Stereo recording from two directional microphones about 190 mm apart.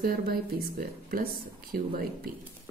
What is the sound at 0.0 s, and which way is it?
Speech, 50° right (ahead or behind).